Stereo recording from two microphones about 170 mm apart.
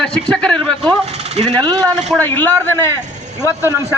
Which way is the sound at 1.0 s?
40° right (ahead or behind).